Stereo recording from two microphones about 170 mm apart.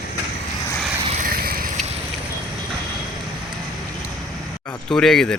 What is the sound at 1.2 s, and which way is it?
Vehicle, 60° right (ahead or behind).